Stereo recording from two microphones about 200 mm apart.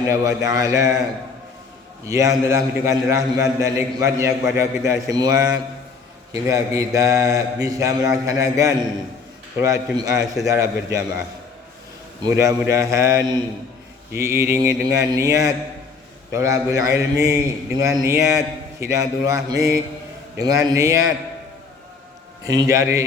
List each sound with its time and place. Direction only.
0.1 s a man's voice: 15° right (ahead or behind)
2.0 s a man's voice: 15° right (ahead or behind)
12.3 s a man's voice: 15° right (ahead or behind)
22.7 s a man's voice: 15° right (ahead or behind)